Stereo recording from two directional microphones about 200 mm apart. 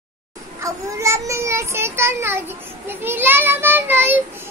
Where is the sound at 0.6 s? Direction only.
15° right (ahead or behind).